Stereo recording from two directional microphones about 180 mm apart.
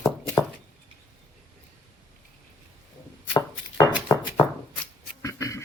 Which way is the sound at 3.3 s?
15° left (ahead or behind).